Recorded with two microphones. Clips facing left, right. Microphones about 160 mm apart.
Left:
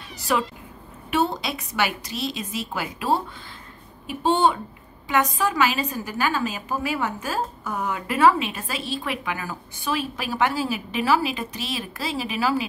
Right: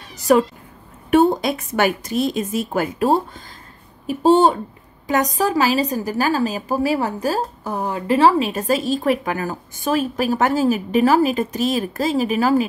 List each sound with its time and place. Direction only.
0.3 s a woman's voice: 45° right (ahead or behind)